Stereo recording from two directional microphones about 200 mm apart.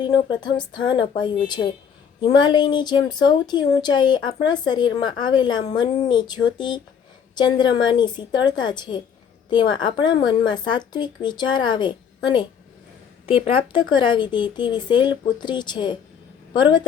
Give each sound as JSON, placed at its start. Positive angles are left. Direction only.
{"t": 0.0, "sound": "speech", "side_deg": 20}